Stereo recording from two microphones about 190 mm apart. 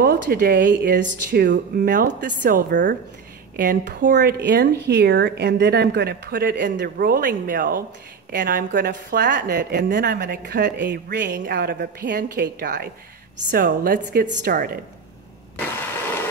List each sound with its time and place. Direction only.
0.2 s a woman's voice: 50° right (ahead or behind)
1.9 s a woman's voice: 45° right (ahead or behind)
4.2 s a woman's voice: 65° right (ahead or behind); by 14.8 s 50° right (ahead or behind)
15.6 s a sound: 10° left (ahead or behind)